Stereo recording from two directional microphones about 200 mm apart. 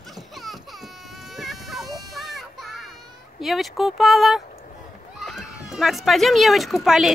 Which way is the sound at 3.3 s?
Centre (ahead or behind).